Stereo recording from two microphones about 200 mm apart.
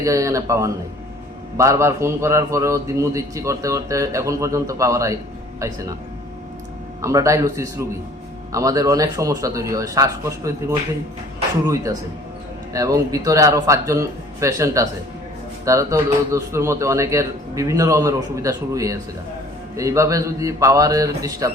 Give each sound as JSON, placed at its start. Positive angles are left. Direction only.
{"t": 0.0, "sound": "a man's voice", "side_deg": -15}
{"t": 7.0, "sound": "a man's voice", "side_deg": -15}